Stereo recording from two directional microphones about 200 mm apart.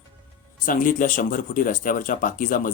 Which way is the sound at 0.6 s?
45° left (ahead or behind).